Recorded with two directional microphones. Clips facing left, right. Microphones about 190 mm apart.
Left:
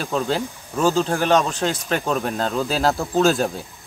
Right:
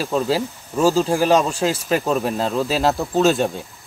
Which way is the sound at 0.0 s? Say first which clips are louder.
Right 3 dB; 5° right (ahead or behind).